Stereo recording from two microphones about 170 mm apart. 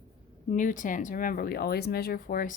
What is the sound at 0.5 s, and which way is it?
Speech, 50° left (ahead or behind).